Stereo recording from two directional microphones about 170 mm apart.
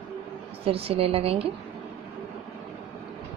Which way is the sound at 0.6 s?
35° right (ahead or behind).